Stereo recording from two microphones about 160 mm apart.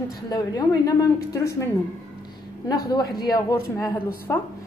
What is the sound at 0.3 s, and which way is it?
A woman's voice, 20° left (ahead or behind).